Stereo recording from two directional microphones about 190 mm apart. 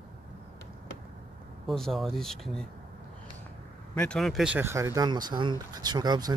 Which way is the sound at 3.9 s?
5° left (ahead or behind).